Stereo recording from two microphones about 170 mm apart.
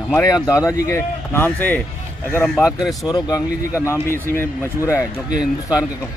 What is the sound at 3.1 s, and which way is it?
Speech, 20° left (ahead or behind).